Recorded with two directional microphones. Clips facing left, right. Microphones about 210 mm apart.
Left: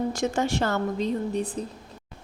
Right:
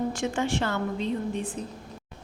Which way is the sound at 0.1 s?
40° left (ahead or behind).